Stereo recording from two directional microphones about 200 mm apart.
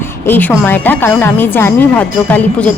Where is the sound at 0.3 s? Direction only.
10° left (ahead or behind).